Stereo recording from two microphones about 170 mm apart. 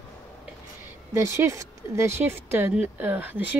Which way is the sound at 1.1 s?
15° right (ahead or behind).